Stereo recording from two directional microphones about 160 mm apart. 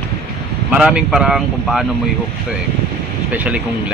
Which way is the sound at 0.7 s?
5° right (ahead or behind).